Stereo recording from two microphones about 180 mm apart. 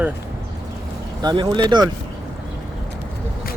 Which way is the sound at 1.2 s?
20° right (ahead or behind).